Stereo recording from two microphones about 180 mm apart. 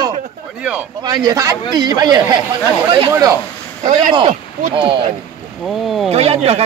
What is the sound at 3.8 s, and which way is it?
Speech, 45° right (ahead or behind).